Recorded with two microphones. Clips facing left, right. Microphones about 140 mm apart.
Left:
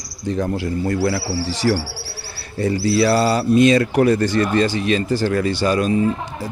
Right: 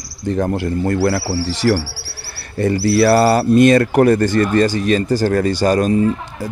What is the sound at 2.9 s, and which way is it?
Speech, 55° right (ahead or behind).